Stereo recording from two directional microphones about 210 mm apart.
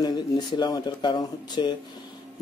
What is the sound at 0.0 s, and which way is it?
Speech, 20° left (ahead or behind).